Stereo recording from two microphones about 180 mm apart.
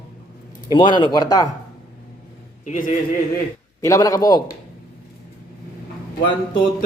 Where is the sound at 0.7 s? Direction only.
25° left (ahead or behind).